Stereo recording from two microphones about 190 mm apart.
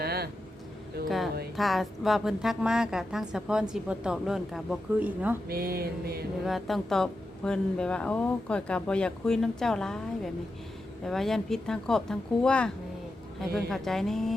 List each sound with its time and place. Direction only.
0.0 s vehicle: 55° right (ahead or behind)
1.0 s a woman's voice: centre (ahead or behind)
5.5 s a sound: 55° right (ahead or behind)
6.4 s a woman's voice: centre (ahead or behind)
11.0 s a woman's voice: centre (ahead or behind)